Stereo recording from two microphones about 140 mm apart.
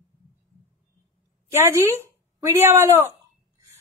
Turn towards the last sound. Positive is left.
turn(degrees=-20)  # may be behind; listen again after turning